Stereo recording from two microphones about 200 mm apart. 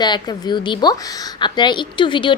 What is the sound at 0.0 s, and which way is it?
Speech, 20° left (ahead or behind).